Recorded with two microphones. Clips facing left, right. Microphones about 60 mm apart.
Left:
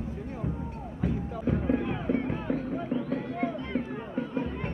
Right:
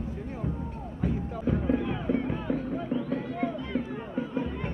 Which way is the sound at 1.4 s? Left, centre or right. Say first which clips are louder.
Even; left.